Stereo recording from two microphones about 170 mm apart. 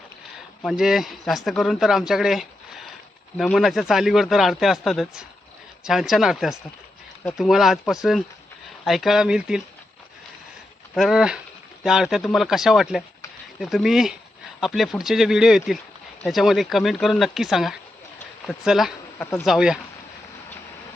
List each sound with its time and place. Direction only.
0.6 s speech: centre (ahead or behind)
10.9 s speech: 5° right (ahead or behind)
19.2 s speech: 15° left (ahead or behind)
19.5 s speech: 5° right (ahead or behind)